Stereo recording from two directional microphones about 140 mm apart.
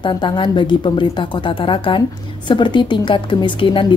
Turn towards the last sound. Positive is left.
turn(degrees=35)  # may be behind; listen again after turning